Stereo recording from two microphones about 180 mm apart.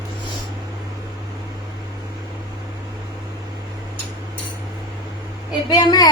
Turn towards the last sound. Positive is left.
turn(degrees=25)  # may be behind; listen again after turning